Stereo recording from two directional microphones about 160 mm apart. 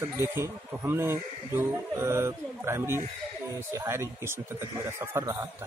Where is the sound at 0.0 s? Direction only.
15° right (ahead or behind).